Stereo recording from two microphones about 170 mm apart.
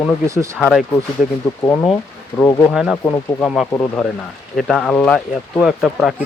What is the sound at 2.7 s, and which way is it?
Speech, 5° right (ahead or behind).